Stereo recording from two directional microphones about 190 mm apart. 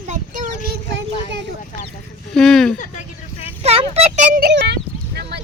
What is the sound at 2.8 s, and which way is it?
Vehicle, 40° left (ahead or behind).